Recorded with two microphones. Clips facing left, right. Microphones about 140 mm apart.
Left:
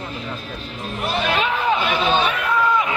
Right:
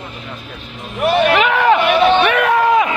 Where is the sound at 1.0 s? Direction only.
65° right (ahead or behind).